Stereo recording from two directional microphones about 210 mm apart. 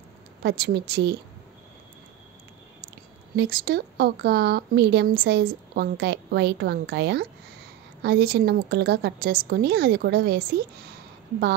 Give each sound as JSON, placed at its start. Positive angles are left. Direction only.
{"t": 0.4, "sound": "speech", "side_deg": -50}
{"t": 3.3, "sound": "speech", "side_deg": -50}